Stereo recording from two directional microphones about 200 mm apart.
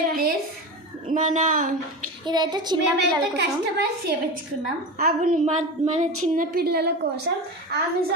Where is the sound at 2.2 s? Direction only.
20° right (ahead or behind).